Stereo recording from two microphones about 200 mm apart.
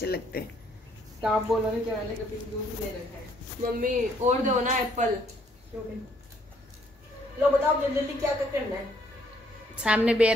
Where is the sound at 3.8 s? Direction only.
35° right (ahead or behind).